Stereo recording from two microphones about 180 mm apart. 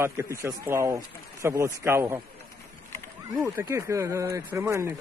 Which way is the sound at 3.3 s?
15° right (ahead or behind).